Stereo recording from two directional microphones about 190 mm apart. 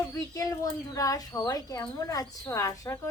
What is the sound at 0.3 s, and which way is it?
Speech, 20° left (ahead or behind).